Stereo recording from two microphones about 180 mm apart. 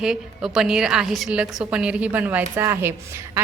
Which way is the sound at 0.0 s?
5° right (ahead or behind).